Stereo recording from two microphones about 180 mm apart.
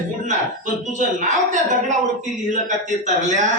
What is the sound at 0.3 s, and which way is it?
A man's voice, 40° right (ahead or behind).